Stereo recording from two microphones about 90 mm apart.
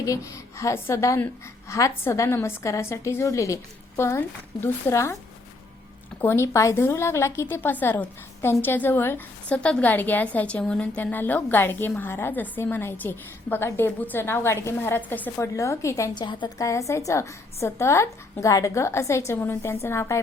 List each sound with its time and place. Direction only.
0.0 s a woman's voice: 35° left (ahead or behind)
6.2 s a woman's voice: 30° left (ahead or behind)
15.4 s a woman's voice: 35° left (ahead or behind)
16.1 s a woman's voice: 60° left (ahead or behind)
16.6 s a woman's voice: 35° left (ahead or behind)